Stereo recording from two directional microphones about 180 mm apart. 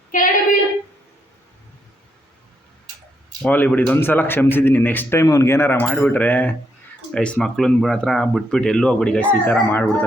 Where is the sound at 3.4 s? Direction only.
10° left (ahead or behind).